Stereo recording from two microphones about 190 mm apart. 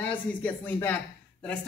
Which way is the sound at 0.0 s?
5° left (ahead or behind).